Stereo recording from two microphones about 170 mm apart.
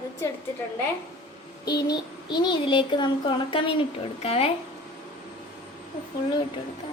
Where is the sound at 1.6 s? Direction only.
25° left (ahead or behind).